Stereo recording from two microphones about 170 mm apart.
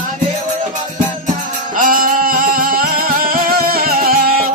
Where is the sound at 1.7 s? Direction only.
55° right (ahead or behind).